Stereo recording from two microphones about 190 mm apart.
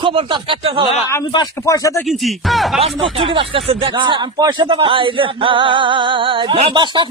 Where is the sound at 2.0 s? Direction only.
Centre (ahead or behind).